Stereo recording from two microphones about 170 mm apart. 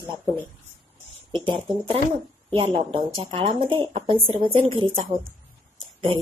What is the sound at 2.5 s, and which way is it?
Speech, 30° right (ahead or behind).